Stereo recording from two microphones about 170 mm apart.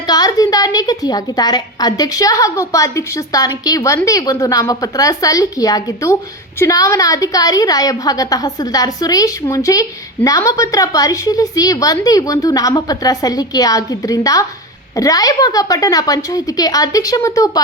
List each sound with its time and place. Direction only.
0.1 s a woman's voice: 20° left (ahead or behind)